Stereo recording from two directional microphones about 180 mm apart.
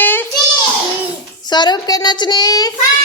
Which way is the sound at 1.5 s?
25° left (ahead or behind).